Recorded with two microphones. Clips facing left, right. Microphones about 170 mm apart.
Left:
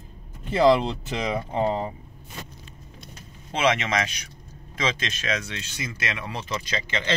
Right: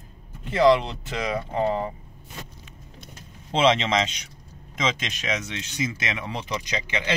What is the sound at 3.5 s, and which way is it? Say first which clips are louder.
Speech: right 3 dB; 25° right (ahead or behind).